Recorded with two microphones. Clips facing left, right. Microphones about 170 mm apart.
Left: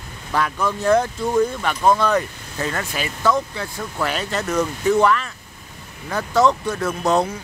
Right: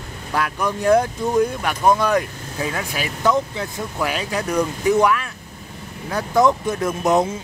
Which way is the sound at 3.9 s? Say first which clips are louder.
Even; 5° right (ahead or behind).